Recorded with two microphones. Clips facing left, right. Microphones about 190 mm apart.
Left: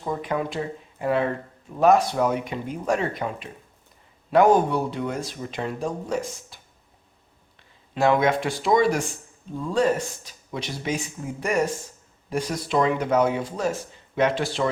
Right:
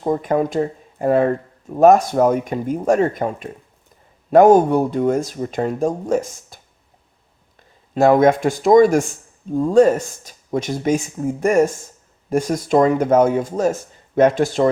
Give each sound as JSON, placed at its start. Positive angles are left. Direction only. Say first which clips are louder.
{"t": 0.0, "sound": "speech", "louder": "right 8 dB", "side_deg": -45}
{"t": 7.9, "sound": "speech", "louder": "right 7 dB", "side_deg": -45}